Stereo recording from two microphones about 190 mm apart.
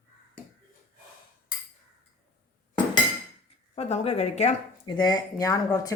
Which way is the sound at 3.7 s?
35° left (ahead or behind).